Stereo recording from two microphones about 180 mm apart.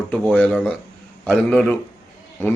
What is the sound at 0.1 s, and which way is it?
A man's voice, 5° left (ahead or behind).